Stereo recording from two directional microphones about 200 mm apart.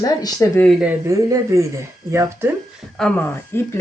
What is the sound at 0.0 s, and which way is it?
Speech, 20° left (ahead or behind).